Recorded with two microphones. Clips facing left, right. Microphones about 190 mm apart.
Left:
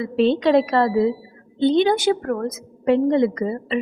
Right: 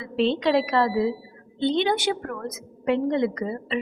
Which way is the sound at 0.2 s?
45° left (ahead or behind).